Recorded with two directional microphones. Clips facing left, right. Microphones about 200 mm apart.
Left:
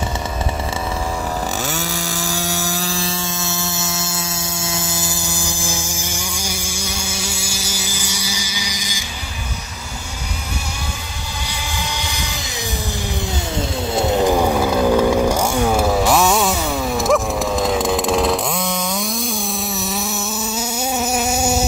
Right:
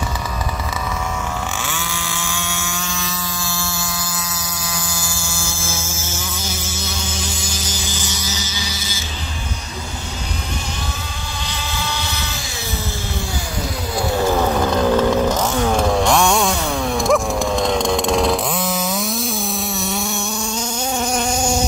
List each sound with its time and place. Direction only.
1.6 s chainsaw: 40° left (ahead or behind); by 4.2 s 25° left (ahead or behind)
4.6 s a sound: 25° left (ahead or behind)
13.9 s chainsaw: 20° left (ahead or behind); by 20.1 s centre (ahead or behind)
20.5 s insect: 5° left (ahead or behind)